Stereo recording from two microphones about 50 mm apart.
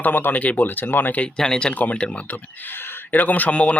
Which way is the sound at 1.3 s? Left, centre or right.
Centre.